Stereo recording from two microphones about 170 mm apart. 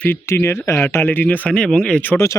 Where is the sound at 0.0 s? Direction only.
10° left (ahead or behind).